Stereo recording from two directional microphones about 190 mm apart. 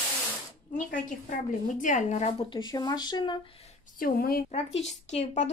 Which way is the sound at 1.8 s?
40° left (ahead or behind).